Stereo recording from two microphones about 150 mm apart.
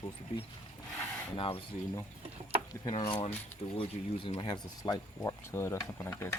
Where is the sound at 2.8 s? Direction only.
30° left (ahead or behind).